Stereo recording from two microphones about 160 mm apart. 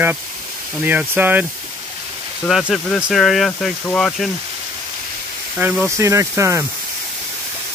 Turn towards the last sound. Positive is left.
turn(degrees=-15)  # may be behind; listen again after turning